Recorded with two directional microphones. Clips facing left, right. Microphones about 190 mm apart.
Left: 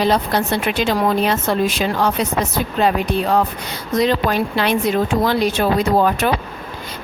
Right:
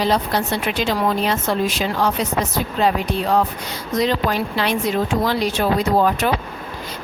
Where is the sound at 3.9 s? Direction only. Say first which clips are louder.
Left 3 dB; 55° left (ahead or behind).